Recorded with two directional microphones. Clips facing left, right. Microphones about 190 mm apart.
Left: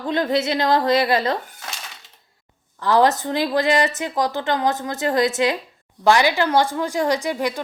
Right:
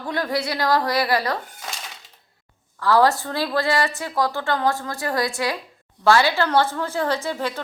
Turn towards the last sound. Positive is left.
turn(degrees=15)  # may be behind; listen again after turning